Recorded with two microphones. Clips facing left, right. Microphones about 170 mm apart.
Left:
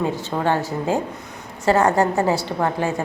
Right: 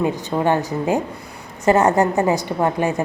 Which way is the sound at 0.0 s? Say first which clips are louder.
Right 3 dB; 15° right (ahead or behind).